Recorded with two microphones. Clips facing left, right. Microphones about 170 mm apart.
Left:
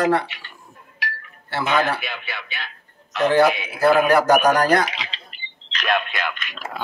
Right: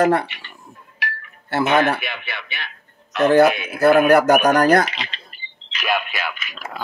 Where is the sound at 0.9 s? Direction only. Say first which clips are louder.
Right 1 dB; 60° right (ahead or behind).